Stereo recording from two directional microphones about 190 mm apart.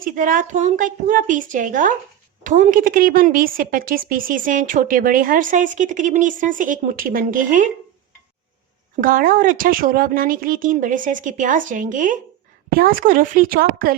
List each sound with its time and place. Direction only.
0.0 s a woman's voice: 45° right (ahead or behind)
9.0 s a woman's voice: 45° right (ahead or behind)